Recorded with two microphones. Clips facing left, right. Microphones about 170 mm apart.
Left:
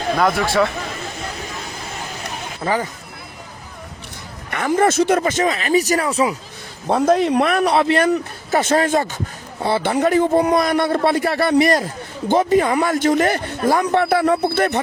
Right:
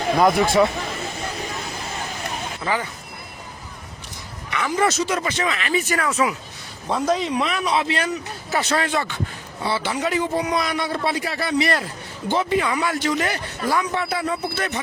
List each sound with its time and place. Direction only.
0.0 s speech: 15° right (ahead or behind)
2.6 s speech: 40° left (ahead or behind)
4.5 s speech: 50° left (ahead or behind); by 6.3 s 35° left (ahead or behind)
6.8 s speech: 55° left (ahead or behind)
9.6 s speech: 55° left (ahead or behind)
12.3 s speech: 45° left (ahead or behind)